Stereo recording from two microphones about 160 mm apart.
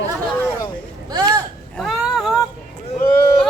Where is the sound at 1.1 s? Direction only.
20° right (ahead or behind).